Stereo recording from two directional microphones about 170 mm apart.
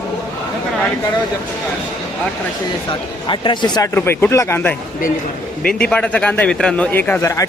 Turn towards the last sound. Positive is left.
turn(degrees=20)  # may be behind; listen again after turning